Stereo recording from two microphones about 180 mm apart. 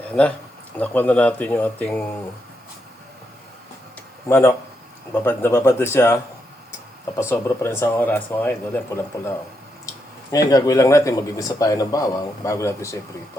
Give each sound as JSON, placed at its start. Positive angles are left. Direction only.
{"t": 0.1, "sound": "speech", "side_deg": 5}
{"t": 4.3, "sound": "speech", "side_deg": 15}
{"t": 7.2, "sound": "speech", "side_deg": 15}
{"t": 10.3, "sound": "speech", "side_deg": 20}